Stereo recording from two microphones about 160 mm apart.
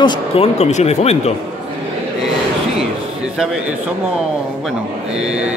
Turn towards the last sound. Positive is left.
turn(degrees=-5)  # may be behind; listen again after turning